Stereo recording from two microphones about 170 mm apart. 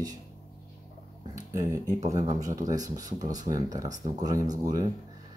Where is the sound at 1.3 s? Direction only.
20° right (ahead or behind).